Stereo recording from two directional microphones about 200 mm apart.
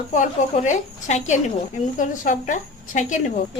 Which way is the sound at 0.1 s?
40° left (ahead or behind).